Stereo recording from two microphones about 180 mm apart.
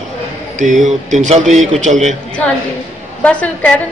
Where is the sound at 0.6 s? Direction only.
45° right (ahead or behind).